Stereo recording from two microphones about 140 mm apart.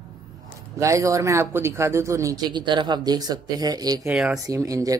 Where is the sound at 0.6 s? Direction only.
20° right (ahead or behind).